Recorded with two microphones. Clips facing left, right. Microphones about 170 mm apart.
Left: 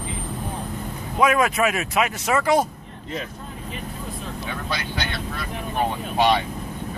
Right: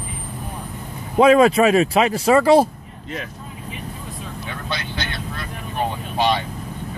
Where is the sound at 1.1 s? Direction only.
30° right (ahead or behind).